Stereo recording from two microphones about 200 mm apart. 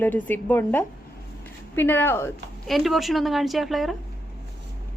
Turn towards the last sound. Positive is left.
turn(degrees=0)  # may be behind; listen again after turning